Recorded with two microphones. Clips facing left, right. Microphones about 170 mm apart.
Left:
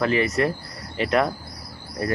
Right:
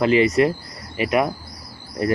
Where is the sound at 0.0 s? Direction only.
20° right (ahead or behind).